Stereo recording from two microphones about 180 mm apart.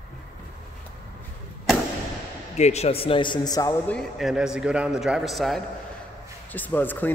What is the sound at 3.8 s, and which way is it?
A man's voice, centre (ahead or behind).